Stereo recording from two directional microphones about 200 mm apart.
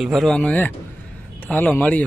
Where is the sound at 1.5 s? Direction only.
5° left (ahead or behind).